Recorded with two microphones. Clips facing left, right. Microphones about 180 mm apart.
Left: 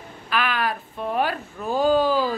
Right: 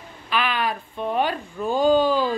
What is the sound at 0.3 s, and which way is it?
Speech, centre (ahead or behind).